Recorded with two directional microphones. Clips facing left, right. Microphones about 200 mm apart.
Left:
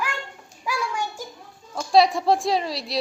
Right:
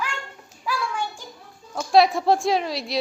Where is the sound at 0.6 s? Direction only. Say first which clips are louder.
Even; 10° left (ahead or behind).